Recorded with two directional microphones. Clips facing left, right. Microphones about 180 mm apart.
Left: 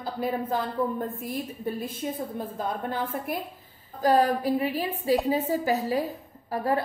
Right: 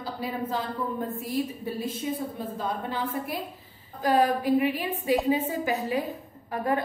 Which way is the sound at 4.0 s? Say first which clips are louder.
Left 1 dB; 40° left (ahead or behind).